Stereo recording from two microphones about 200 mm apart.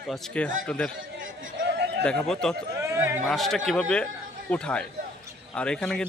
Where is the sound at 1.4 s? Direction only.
55° right (ahead or behind).